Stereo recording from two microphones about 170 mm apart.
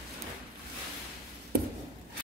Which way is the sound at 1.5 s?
60° right (ahead or behind).